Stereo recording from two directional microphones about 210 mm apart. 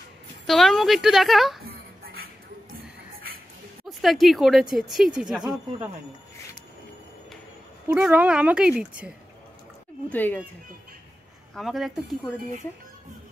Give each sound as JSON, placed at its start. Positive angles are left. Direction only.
{"t": 0.5, "sound": "speech", "side_deg": 0}
{"t": 1.6, "sound": "a sound", "side_deg": -45}
{"t": 3.8, "sound": "speech", "side_deg": 0}
{"t": 7.9, "sound": "speech", "side_deg": -5}
{"t": 10.0, "sound": "speech", "side_deg": 10}
{"t": 11.5, "sound": "speech", "side_deg": 0}